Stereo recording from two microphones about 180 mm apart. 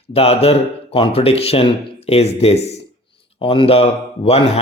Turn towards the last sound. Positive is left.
turn(degrees=35)  # may be behind; listen again after turning